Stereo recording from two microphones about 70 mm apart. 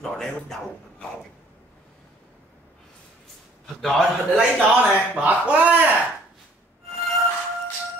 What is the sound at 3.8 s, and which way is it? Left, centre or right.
Speech, centre.